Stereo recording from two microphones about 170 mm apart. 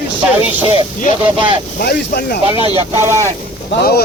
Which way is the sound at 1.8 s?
70° left (ahead or behind).